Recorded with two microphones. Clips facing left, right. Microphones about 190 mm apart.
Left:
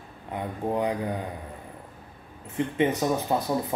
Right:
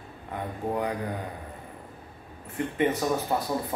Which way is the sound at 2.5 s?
20° left (ahead or behind).